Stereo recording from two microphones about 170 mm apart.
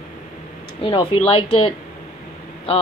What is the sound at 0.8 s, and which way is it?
A woman's voice, 30° left (ahead or behind).